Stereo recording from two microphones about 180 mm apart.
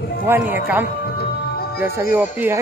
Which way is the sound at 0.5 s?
10° right (ahead or behind).